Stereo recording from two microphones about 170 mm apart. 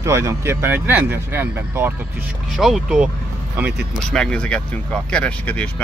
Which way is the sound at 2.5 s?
Centre (ahead or behind).